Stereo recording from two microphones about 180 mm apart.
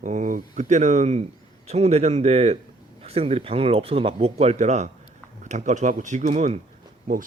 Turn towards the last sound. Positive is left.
turn(degrees=-45)  # may be behind; listen again after turning